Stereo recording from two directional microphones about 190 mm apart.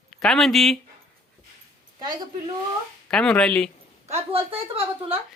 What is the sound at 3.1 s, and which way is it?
Speech, 5° left (ahead or behind).